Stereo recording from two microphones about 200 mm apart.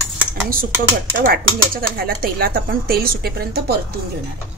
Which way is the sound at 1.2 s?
45° right (ahead or behind).